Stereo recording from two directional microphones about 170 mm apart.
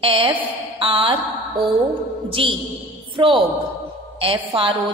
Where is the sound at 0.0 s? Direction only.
30° right (ahead or behind).